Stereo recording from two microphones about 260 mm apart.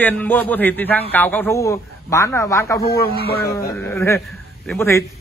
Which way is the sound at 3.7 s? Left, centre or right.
Centre.